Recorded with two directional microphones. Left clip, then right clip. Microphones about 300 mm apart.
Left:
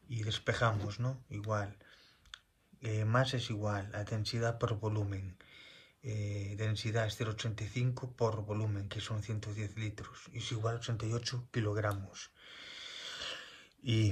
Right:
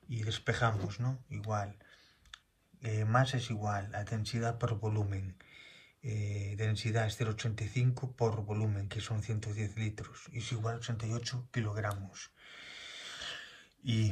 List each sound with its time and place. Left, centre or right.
0.1 s speech: centre